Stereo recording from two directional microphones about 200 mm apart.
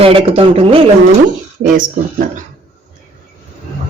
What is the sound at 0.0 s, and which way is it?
Speech, 30° right (ahead or behind).